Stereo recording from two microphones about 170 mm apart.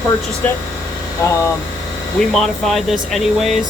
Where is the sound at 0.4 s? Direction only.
10° left (ahead or behind).